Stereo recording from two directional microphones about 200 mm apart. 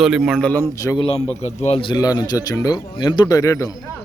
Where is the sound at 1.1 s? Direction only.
30° left (ahead or behind); by 3.7 s 15° left (ahead or behind).